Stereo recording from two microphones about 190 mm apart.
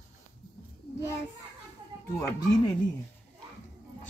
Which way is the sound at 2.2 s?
20° left (ahead or behind).